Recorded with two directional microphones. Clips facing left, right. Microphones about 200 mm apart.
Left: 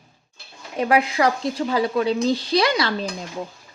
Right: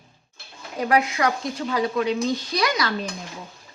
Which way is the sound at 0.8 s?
30° left (ahead or behind).